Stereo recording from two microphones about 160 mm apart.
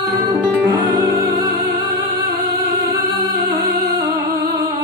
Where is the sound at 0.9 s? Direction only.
25° right (ahead or behind).